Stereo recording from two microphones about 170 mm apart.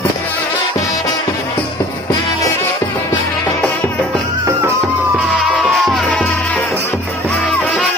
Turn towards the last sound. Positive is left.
turn(degrees=5)  # may be behind; listen again after turning